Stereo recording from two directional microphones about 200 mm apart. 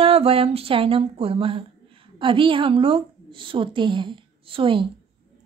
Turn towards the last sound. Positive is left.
turn(degrees=-25)  # may be behind; listen again after turning